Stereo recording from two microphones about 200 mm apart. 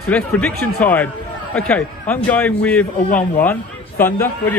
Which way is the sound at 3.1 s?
40° left (ahead or behind).